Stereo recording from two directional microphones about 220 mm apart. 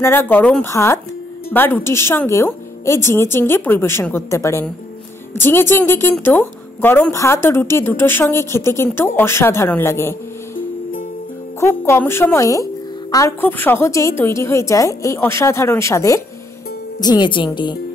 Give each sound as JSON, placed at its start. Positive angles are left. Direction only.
{"t": 0.0, "sound": "a woman's voice", "side_deg": 10}
{"t": 11.6, "sound": "a woman's voice", "side_deg": 10}